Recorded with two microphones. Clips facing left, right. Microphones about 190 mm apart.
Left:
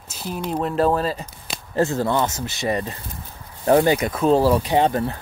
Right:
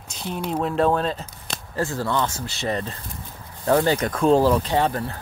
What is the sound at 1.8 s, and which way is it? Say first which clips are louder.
A man's voice: left 4 dB; 20° left (ahead or behind).